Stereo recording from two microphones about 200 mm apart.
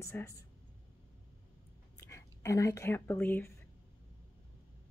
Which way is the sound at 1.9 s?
15° left (ahead or behind).